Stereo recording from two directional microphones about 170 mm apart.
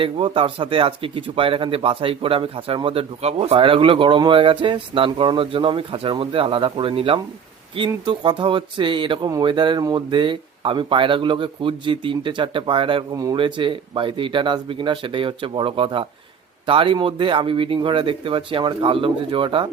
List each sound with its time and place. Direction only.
0.0 s speech: 30° right (ahead or behind)